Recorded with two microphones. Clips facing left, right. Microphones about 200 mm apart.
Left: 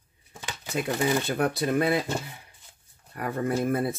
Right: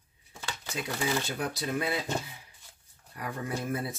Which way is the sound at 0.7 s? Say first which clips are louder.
Left 6 dB; 55° left (ahead or behind).